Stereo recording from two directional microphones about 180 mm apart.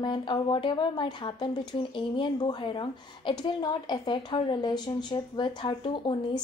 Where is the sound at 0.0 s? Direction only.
25° left (ahead or behind).